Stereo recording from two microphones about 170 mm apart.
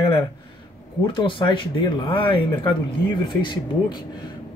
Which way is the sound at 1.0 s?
30° left (ahead or behind).